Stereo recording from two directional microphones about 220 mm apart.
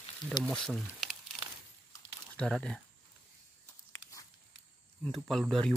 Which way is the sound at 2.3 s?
5° left (ahead or behind).